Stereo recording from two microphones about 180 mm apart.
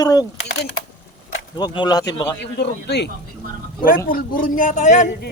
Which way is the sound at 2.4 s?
70° left (ahead or behind).